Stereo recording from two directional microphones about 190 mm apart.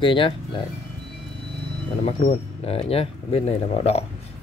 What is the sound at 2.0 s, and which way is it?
Speech, 35° left (ahead or behind).